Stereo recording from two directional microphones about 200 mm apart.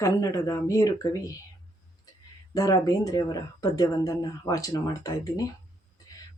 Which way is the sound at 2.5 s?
15° left (ahead or behind).